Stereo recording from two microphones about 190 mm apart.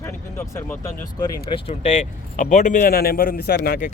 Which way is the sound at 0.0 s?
15° left (ahead or behind).